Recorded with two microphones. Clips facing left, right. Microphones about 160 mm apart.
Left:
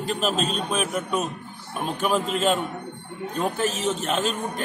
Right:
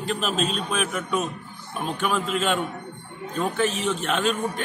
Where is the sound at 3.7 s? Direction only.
40° left (ahead or behind).